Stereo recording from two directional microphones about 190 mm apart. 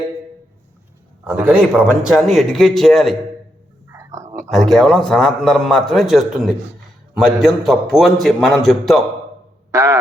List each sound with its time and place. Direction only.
1.2 s a man's voice: 10° right (ahead or behind)
3.8 s whispering: 15° right (ahead or behind)
4.4 s a man's voice: centre (ahead or behind)
9.7 s a sound: 15° right (ahead or behind)